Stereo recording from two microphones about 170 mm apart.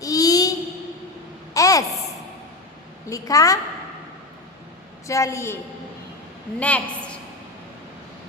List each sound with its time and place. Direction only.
0.0 s a sound: 20° left (ahead or behind)
1.5 s babbling: 20° left (ahead or behind)
3.1 s a woman's voice: 20° left (ahead or behind)
5.0 s a woman's voice: 20° left (ahead or behind)
6.6 s a woman's voice: 10° left (ahead or behind)